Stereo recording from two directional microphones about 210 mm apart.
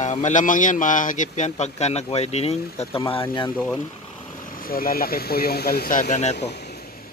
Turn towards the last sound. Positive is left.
turn(degrees=35)  # may be behind; listen again after turning